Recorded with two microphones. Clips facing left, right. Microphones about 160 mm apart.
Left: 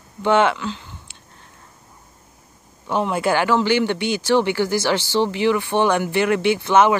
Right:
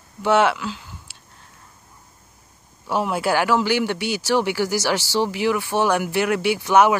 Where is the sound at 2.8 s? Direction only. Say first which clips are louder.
Left 2 dB; 5° right (ahead or behind).